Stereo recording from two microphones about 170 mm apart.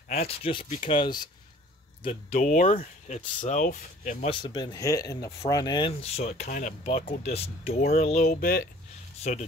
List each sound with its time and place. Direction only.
0.2 s speech: 30° left (ahead or behind)
2.4 s speech: 50° left (ahead or behind)
4.3 s speech: 25° left (ahead or behind); by 8.3 s 45° left (ahead or behind)
8.3 s speech: 65° left (ahead or behind)
9.3 s speech: 45° left (ahead or behind)